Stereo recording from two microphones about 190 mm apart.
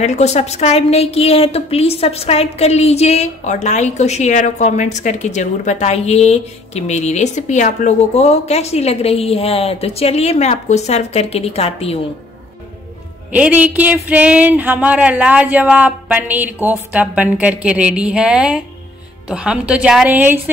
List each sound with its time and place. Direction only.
0.0 s a woman's voice: 35° left (ahead or behind)
13.3 s a woman's voice: 10° right (ahead or behind)